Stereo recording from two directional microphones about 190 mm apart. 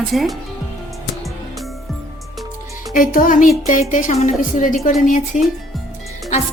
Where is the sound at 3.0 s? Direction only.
45° left (ahead or behind).